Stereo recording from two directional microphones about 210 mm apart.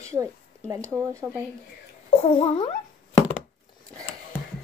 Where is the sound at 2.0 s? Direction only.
25° left (ahead or behind).